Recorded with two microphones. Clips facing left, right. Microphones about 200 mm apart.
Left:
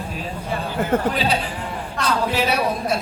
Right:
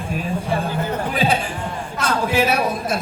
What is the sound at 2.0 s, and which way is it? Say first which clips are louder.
Speech: right 2 dB; 50° right (ahead or behind).